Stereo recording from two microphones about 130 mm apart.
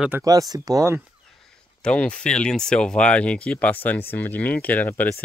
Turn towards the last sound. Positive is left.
turn(degrees=15)  # may be behind; listen again after turning